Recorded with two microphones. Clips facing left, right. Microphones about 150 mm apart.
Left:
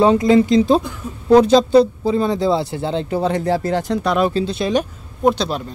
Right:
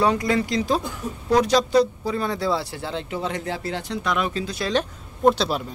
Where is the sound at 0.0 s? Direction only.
25° left (ahead or behind).